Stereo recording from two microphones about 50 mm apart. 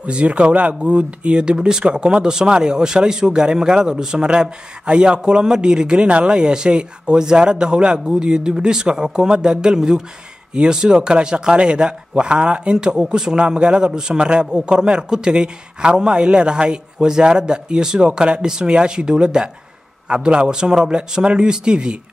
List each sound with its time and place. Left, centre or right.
0.0 s speech: right